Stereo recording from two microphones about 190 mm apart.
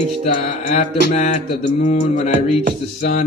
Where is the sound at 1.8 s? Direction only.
40° left (ahead or behind).